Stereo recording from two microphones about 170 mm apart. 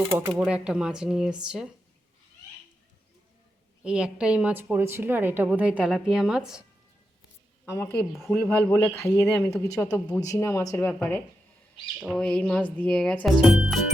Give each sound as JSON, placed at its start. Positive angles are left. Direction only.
{"t": 0.1, "sound": "speech", "side_deg": -10}
{"t": 3.8, "sound": "a woman's voice", "side_deg": -5}
{"t": 7.7, "sound": "speech", "side_deg": 15}